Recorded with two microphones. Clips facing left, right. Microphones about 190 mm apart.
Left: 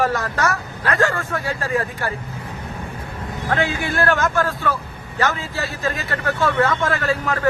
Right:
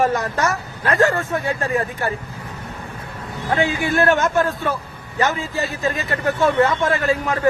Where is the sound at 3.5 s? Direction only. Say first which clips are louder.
Right 2 dB; 15° right (ahead or behind).